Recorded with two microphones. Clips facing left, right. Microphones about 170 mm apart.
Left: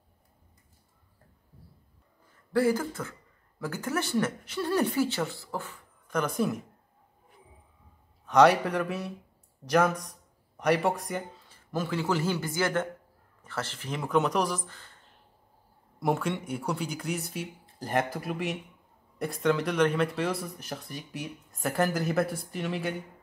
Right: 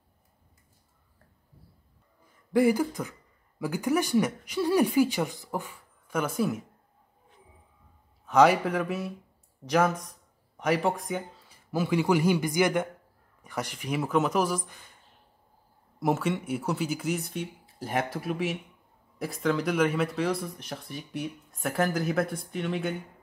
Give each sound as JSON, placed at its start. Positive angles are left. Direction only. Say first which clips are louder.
{"t": 2.5, "sound": "speech", "louder": "right 3 dB", "side_deg": -15}
{"t": 8.3, "sound": "speech", "louder": "even", "side_deg": -5}
{"t": 16.0, "sound": "speech", "louder": "right 1 dB", "side_deg": -5}